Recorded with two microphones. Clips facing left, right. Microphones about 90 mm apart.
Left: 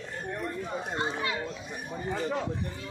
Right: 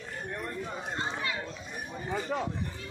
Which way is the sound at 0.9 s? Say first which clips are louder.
Left 3 dB; 20° left (ahead or behind).